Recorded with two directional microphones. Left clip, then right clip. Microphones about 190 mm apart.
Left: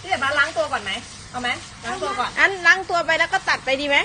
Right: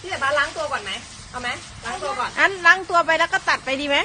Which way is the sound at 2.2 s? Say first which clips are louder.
Even; 25° right (ahead or behind).